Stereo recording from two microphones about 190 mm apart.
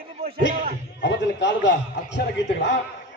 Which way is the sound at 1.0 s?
70° left (ahead or behind).